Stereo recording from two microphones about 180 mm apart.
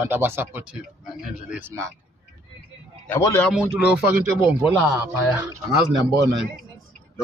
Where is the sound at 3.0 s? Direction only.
5° left (ahead or behind).